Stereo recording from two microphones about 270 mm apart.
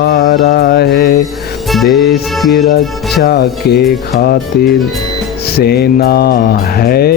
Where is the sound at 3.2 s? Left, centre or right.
Left.